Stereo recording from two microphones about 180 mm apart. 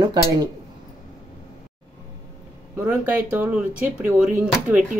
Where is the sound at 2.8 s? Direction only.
10° right (ahead or behind).